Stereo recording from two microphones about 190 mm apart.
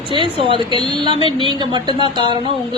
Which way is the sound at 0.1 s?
25° right (ahead or behind).